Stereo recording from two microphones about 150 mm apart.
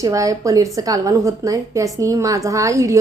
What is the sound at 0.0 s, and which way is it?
A woman's voice, 20° right (ahead or behind).